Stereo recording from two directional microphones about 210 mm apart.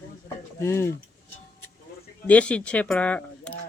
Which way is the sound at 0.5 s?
15° left (ahead or behind).